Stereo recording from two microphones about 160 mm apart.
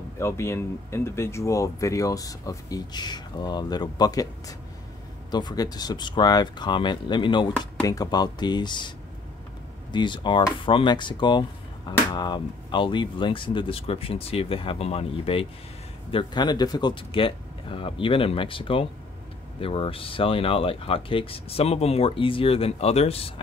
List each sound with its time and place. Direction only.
0.2 s speech: 15° left (ahead or behind)
9.9 s speech: 30° left (ahead or behind)